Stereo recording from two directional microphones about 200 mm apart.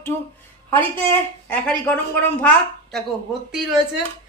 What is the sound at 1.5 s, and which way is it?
Speech, 10° left (ahead or behind).